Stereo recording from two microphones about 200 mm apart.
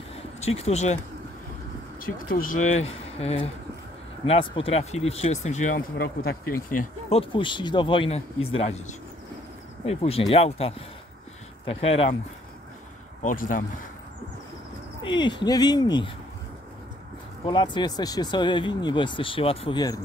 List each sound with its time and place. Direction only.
0.1 s a sound: 30° left (ahead or behind)
2.0 s speech: 45° left (ahead or behind)
7.1 s speech: 25° left (ahead or behind)
13.2 s speech: 40° left (ahead or behind)
15.0 s speech: 25° left (ahead or behind)
17.5 s speech: 20° left (ahead or behind)